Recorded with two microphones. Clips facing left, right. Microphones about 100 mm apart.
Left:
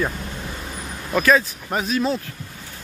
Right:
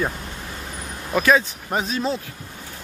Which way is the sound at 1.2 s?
20° right (ahead or behind).